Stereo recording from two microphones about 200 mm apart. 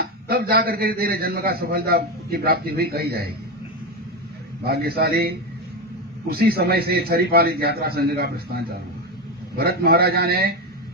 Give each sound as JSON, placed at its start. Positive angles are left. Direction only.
{"t": 0.0, "sound": "a man's voice", "side_deg": -50}
{"t": 4.6, "sound": "a man's voice", "side_deg": -50}